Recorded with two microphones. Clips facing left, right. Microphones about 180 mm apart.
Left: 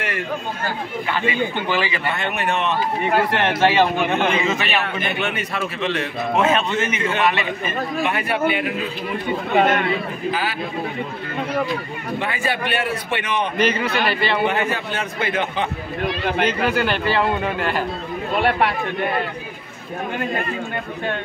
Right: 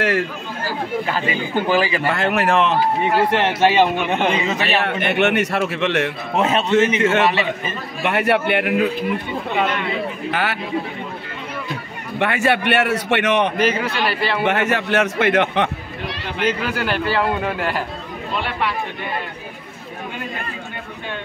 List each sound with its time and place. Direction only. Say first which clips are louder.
1.5 s a man's voice: right 4 dB; 40° right (ahead or behind)
2.0 s speech: right 5 dB; 90° right
3.3 s a man's voice: right 2 dB; 15° right (ahead or behind)
4.5 s a man's voice: right 2 dB; 35° right (ahead or behind)
4.8 s a man's voice: right 6 dB; 70° right (ahead or behind)
6.3 s a man's voice: right 2 dB; 35° right (ahead or behind)
7.0 s a man's voice: right 4 dB; 75° right (ahead or behind)
9.5 s speech: left 4 dB; 50° left (ahead or behind)
10.3 s a man's voice: right 4 dB; 70° right (ahead or behind)
12.2 s a man's voice: right 7 dB; 75° right (ahead or behind)
13.6 s a man's voice: even; 5° right (ahead or behind)
14.4 s a man's voice: right 2 dB; 75° right (ahead or behind)
16.4 s a man's voice: right 1 dB; 5° right (ahead or behind)
18.3 s speech: left 4 dB; 50° left (ahead or behind)